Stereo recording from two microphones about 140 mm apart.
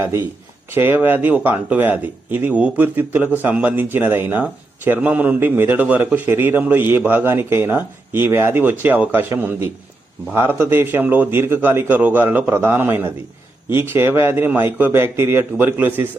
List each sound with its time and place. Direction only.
0.0 s a man's voice: 15° right (ahead or behind)